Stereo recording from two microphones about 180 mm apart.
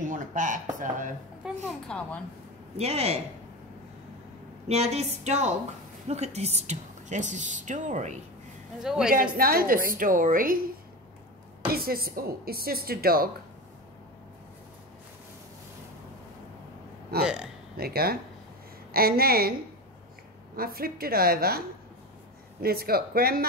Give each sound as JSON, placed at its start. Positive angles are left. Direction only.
{"t": 0.0, "sound": "speech", "side_deg": -45}
{"t": 1.7, "sound": "a woman's voice", "side_deg": 5}
{"t": 2.8, "sound": "a woman's voice", "side_deg": -35}
{"t": 4.6, "sound": "a woman's voice", "side_deg": -35}
{"t": 8.8, "sound": "a man's voice", "side_deg": -5}
{"t": 9.1, "sound": "a woman's voice", "side_deg": -55}
{"t": 17.2, "sound": "a man's voice", "side_deg": -5}
{"t": 17.7, "sound": "a woman's voice", "side_deg": -60}
{"t": 20.5, "sound": "a woman's voice", "side_deg": -55}